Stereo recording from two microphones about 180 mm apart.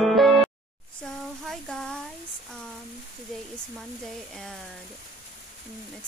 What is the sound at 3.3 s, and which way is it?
Sizzle, 5° left (ahead or behind).